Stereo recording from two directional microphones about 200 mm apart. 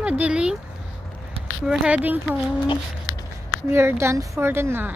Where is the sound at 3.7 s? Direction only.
10° right (ahead or behind).